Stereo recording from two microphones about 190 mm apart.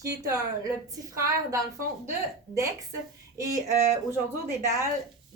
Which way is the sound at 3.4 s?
15° right (ahead or behind).